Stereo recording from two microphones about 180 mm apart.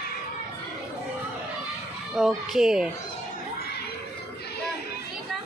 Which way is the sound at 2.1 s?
Centre (ahead or behind).